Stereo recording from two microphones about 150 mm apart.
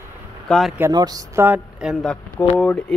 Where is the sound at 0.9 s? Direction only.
25° right (ahead or behind).